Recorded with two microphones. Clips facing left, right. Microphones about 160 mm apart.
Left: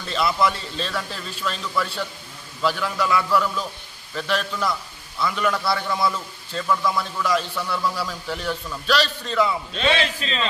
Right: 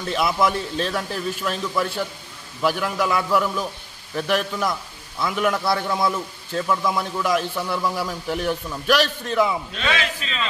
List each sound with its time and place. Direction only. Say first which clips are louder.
0.4 s a man's voice: right 2 dB; 15° right (ahead or behind)
9.8 s a man's voice: left 3 dB; 30° left (ahead or behind)